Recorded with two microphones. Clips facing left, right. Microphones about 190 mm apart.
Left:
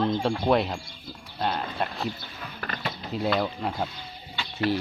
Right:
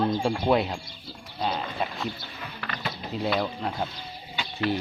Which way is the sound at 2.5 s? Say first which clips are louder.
Left 2 dB; 45° left (ahead or behind).